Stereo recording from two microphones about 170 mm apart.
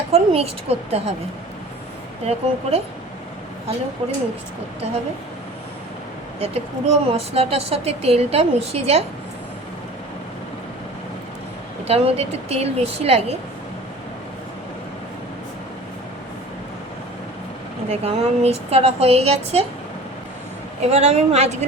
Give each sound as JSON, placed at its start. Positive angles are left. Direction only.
{"t": 0.1, "sound": "a woman's voice", "side_deg": -35}
{"t": 2.2, "sound": "a woman's voice", "side_deg": -35}
{"t": 6.4, "sound": "a woman's voice", "side_deg": -35}
{"t": 11.9, "sound": "a woman's voice", "side_deg": -35}
{"t": 17.9, "sound": "a woman's voice", "side_deg": -40}
{"t": 20.8, "sound": "a woman's voice", "side_deg": -40}